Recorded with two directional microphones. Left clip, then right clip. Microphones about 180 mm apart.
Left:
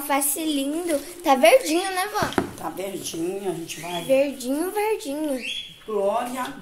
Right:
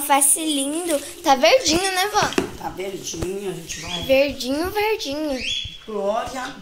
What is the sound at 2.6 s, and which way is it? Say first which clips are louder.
Speech: right 1 dB; 50° left (ahead or behind).